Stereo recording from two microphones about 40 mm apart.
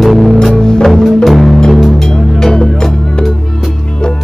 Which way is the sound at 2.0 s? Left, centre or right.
Centre.